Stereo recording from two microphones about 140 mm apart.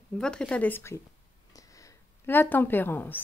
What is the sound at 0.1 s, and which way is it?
Speech, 5° left (ahead or behind).